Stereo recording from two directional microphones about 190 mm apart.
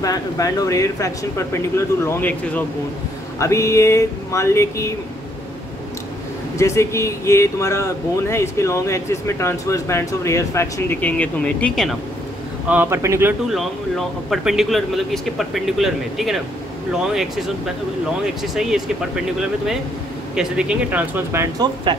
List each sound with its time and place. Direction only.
0.0 s speech: 20° left (ahead or behind)
6.6 s speech: 15° left (ahead or behind)
12.6 s speech: 10° right (ahead or behind)
13.5 s speech: centre (ahead or behind)
20.3 s speech: 5° right (ahead or behind)